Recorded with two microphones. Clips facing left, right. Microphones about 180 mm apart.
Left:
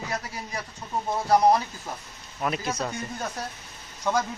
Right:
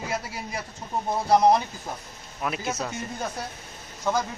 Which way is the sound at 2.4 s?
5° right (ahead or behind).